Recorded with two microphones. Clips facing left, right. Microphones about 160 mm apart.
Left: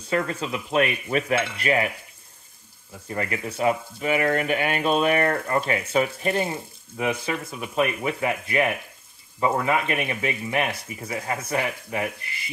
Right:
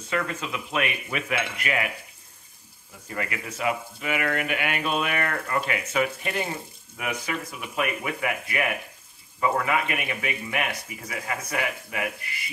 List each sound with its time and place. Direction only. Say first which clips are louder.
0.1 s speech: left 4 dB; 35° left (ahead or behind)
3.1 s speech: left 4 dB; 30° left (ahead or behind)